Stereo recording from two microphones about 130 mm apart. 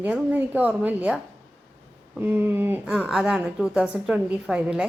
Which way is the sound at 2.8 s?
5° right (ahead or behind).